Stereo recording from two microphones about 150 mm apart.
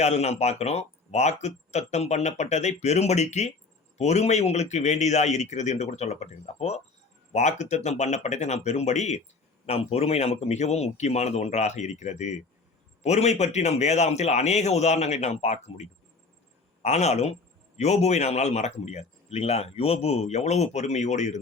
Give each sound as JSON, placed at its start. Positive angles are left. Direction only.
{"t": 0.0, "sound": "speech", "side_deg": 45}